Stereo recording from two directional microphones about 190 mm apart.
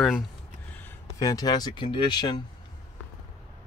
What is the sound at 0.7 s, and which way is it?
Speech, 15° left (ahead or behind).